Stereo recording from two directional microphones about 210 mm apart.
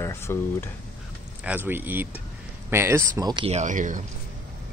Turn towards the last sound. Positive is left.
turn(degrees=-35)  # may be behind; listen again after turning